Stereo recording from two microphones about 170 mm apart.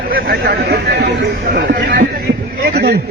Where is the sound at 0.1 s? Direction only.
60° right (ahead or behind); by 1.3 s 75° right (ahead or behind).